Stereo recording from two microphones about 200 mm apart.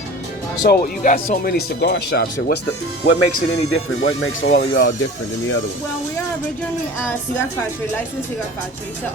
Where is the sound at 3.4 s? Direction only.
90° left.